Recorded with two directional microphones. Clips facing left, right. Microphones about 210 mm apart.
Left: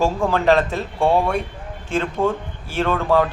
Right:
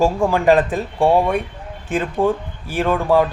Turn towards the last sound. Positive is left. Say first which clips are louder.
# right 2 dB
turn(degrees=-15)  # may be behind; listen again after turning